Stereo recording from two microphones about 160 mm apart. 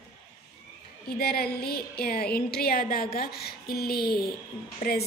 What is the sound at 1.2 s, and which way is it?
A woman's voice, 75° left (ahead or behind).